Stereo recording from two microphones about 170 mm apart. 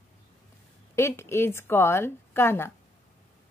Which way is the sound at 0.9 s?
15° left (ahead or behind).